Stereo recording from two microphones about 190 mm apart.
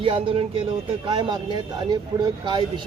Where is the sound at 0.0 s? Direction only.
25° right (ahead or behind).